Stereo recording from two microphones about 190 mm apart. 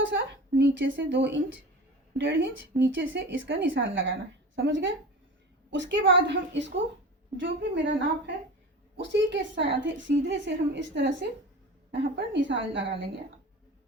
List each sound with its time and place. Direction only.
0.0 s a woman's voice: 80° right